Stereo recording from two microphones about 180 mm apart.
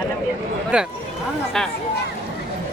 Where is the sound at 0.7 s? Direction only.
5° right (ahead or behind).